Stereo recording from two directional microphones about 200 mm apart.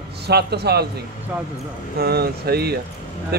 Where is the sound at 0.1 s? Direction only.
55° right (ahead or behind).